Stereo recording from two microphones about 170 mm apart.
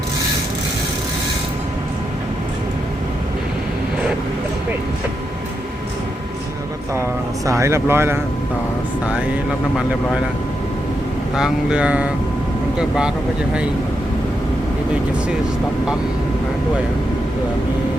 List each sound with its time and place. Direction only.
6.9 s speech: 15° right (ahead or behind)
11.3 s speech: 5° right (ahead or behind)